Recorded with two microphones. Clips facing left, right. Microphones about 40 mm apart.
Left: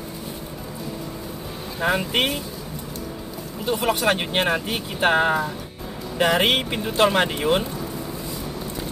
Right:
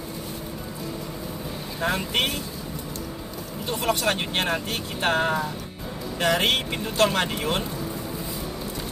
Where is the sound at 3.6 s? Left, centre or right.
Centre.